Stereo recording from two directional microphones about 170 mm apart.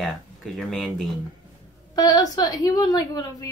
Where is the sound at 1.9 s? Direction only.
20° left (ahead or behind).